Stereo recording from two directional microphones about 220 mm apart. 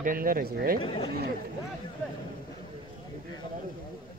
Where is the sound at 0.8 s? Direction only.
20° left (ahead or behind).